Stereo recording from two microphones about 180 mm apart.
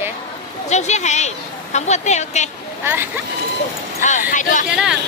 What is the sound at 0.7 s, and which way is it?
A woman's voice, 40° left (ahead or behind).